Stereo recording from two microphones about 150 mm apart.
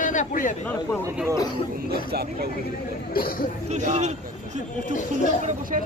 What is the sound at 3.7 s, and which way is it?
Speech, 50° right (ahead or behind).